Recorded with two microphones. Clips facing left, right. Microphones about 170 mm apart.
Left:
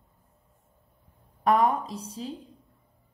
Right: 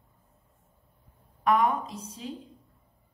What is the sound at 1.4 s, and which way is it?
Speech, 35° left (ahead or behind).